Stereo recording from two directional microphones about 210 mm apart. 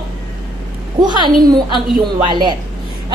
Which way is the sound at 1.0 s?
20° right (ahead or behind).